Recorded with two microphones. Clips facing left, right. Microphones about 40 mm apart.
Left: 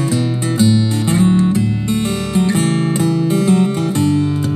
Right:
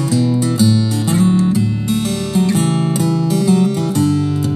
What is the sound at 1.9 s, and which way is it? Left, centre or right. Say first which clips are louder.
Music: even; left.